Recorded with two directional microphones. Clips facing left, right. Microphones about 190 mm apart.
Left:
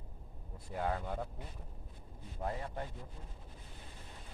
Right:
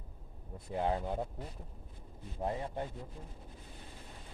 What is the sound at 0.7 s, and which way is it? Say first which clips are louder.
Speech: right 3 dB; 25° right (ahead or behind).